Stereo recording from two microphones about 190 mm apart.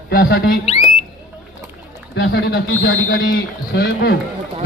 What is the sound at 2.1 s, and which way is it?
Speech, 55° left (ahead or behind).